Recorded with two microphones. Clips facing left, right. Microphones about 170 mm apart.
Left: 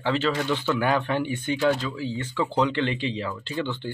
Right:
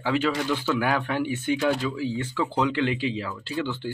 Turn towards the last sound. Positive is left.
turn(degrees=-5)  # may be behind; listen again after turning